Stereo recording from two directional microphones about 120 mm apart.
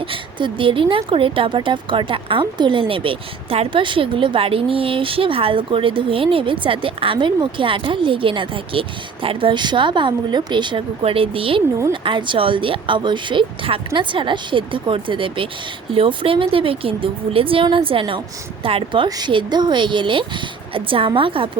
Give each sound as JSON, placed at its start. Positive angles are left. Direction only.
{"t": 0.0, "sound": "a woman's voice", "side_deg": -45}